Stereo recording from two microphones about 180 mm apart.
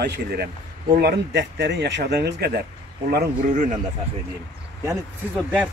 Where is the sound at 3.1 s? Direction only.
45° right (ahead or behind).